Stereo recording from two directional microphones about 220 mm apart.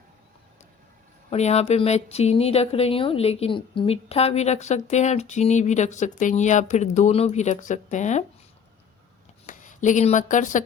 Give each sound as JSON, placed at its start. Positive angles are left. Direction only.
{"t": 1.3, "sound": "speech", "side_deg": 30}
{"t": 9.5, "sound": "speech", "side_deg": 35}